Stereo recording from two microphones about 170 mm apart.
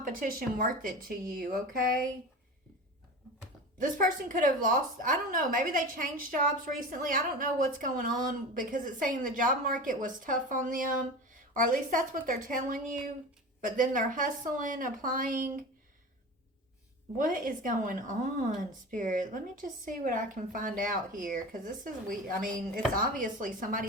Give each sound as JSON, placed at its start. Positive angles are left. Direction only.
{"t": 0.0, "sound": "speech", "side_deg": -55}
{"t": 3.8, "sound": "a woman's voice", "side_deg": -50}
{"t": 17.2, "sound": "a woman's voice", "side_deg": -55}